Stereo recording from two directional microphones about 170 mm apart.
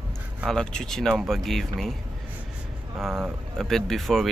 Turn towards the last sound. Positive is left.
turn(degrees=0)  # may be behind; listen again after turning